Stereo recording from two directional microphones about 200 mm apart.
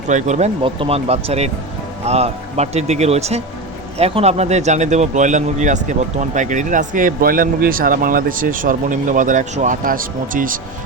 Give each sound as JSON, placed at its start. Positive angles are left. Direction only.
{"t": 0.1, "sound": "speech", "side_deg": -35}